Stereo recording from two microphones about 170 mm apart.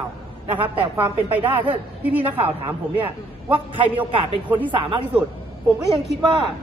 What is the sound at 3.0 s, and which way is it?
A man's voice, 30° right (ahead or behind).